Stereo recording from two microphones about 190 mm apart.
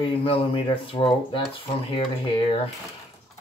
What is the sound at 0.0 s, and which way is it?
Speech, 30° left (ahead or behind).